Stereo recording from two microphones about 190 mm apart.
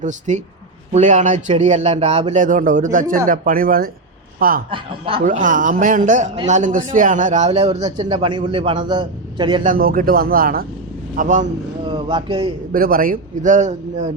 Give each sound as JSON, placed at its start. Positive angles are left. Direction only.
{"t": 0.0, "sound": "a man's voice", "side_deg": -40}
{"t": 4.7, "sound": "a man's voice", "side_deg": -30}
{"t": 5.2, "sound": "a man's voice", "side_deg": -45}
{"t": 7.9, "sound": "a man's voice", "side_deg": -25}
{"t": 9.6, "sound": "a man's voice", "side_deg": -50}
{"t": 11.9, "sound": "a man's voice", "side_deg": -25}
{"t": 12.7, "sound": "a man's voice", "side_deg": -50}